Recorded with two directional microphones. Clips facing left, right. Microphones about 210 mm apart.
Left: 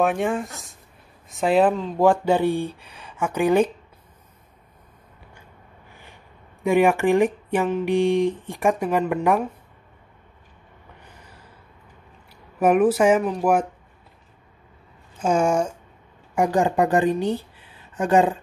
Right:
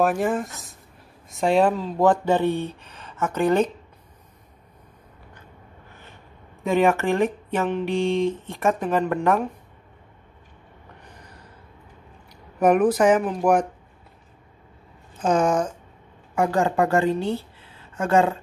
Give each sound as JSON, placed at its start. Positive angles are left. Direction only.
{"t": 0.0, "sound": "speech", "side_deg": 0}
{"t": 2.0, "sound": "speech", "side_deg": 10}
{"t": 6.6, "sound": "speech", "side_deg": 15}
{"t": 12.5, "sound": "speech", "side_deg": 5}
{"t": 15.1, "sound": "speech", "side_deg": 10}